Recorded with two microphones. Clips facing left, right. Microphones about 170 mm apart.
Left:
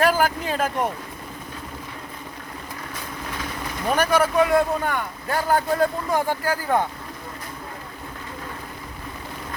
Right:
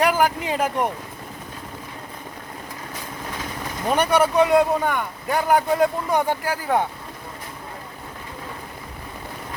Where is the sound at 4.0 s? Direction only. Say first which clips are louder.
Right 1 dB; 20° right (ahead or behind).